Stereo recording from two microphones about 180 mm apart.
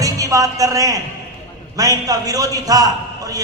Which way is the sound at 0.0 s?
20° right (ahead or behind).